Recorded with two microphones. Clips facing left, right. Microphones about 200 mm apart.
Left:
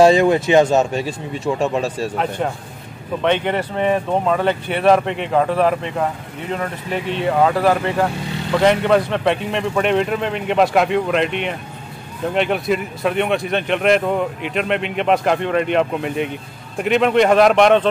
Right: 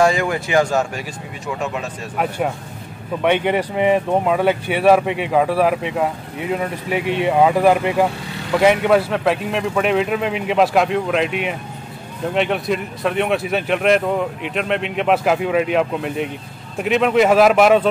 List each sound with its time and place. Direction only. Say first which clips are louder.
0.0 s speech: left 5 dB; 25° left (ahead or behind)
2.1 s speech: even; 10° right (ahead or behind)